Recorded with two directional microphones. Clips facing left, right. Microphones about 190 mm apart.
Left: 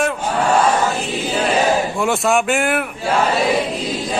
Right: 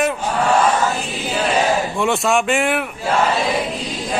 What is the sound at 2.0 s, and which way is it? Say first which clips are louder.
Speech: left 1 dB; centre (ahead or behind).